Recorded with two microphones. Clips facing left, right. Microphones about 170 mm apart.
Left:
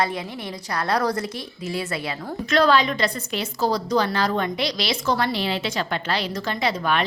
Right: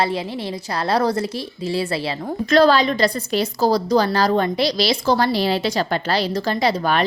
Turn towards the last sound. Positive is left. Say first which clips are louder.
# right 4 dB
turn(degrees=-35)  # may be behind; listen again after turning